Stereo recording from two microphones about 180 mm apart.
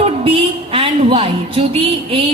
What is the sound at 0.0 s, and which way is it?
A woman's voice, 30° right (ahead or behind).